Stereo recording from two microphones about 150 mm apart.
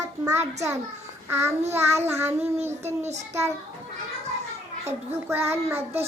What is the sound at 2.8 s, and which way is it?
Child singing, 45° right (ahead or behind).